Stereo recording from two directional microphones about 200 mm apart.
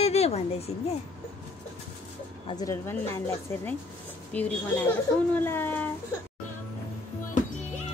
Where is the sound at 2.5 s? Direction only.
15° left (ahead or behind).